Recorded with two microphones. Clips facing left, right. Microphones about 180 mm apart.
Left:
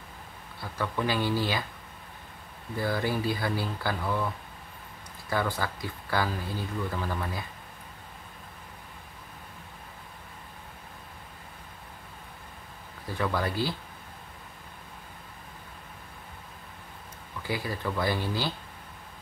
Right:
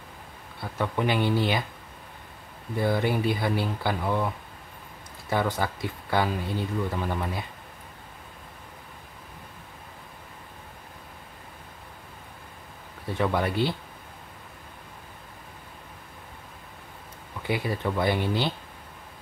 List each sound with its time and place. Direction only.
0.6 s speech: 20° right (ahead or behind)
2.7 s speech: 20° right (ahead or behind)
5.3 s speech: 20° right (ahead or behind)
13.0 s speech: 25° right (ahead or behind)
17.4 s speech: 25° right (ahead or behind)